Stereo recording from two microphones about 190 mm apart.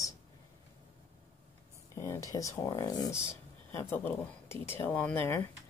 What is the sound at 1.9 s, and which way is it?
A woman's voice, 15° left (ahead or behind).